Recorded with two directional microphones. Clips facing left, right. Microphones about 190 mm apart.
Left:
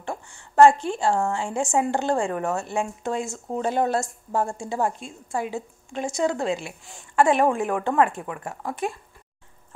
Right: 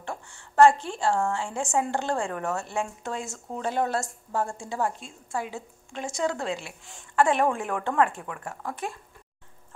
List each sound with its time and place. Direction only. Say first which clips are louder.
0.0 s speech: left 4 dB; 15° left (ahead or behind)